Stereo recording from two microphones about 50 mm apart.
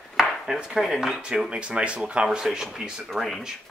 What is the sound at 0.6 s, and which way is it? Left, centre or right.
Speech, centre.